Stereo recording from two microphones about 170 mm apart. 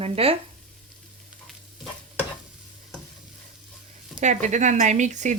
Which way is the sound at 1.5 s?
Centre (ahead or behind).